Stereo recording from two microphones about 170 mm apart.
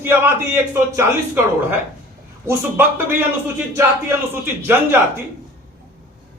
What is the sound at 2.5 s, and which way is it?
Speech, 10° right (ahead or behind).